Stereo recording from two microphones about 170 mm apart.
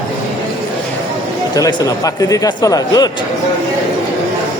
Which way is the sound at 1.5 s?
20° left (ahead or behind).